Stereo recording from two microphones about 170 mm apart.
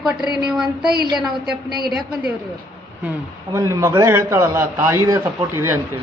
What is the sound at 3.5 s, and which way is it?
A man's voice, 20° right (ahead or behind).